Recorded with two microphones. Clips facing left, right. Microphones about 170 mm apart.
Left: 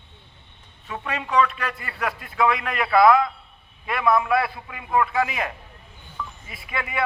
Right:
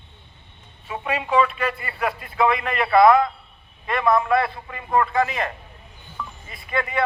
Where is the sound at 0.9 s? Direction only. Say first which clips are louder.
Right 2 dB; 10° right (ahead or behind).